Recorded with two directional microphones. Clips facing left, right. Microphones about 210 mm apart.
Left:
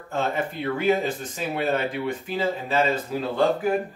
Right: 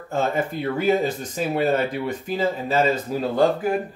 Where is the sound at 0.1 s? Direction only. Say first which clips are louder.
Right 3 dB; 40° right (ahead or behind).